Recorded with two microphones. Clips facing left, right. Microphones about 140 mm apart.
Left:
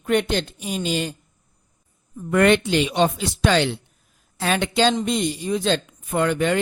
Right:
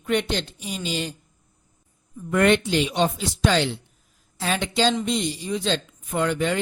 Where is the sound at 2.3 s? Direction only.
65° left (ahead or behind).